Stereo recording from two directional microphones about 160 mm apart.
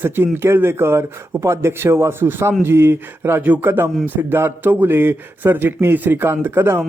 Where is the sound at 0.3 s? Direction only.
15° right (ahead or behind).